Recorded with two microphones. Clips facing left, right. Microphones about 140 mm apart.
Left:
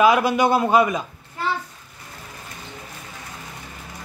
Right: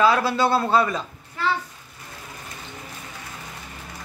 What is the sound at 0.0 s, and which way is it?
A man's voice, 15° left (ahead or behind).